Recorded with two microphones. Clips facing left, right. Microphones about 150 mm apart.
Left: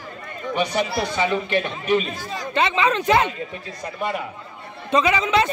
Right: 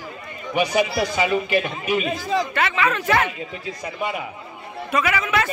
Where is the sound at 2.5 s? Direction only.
20° left (ahead or behind).